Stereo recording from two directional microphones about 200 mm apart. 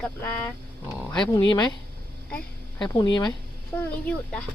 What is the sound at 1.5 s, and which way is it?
Speech, 20° left (ahead or behind).